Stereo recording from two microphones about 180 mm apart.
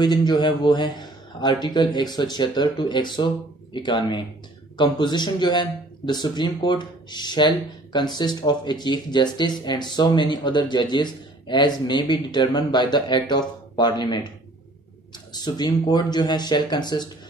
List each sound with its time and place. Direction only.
0.0 s speech: 25° left (ahead or behind)
15.3 s speech: 25° left (ahead or behind)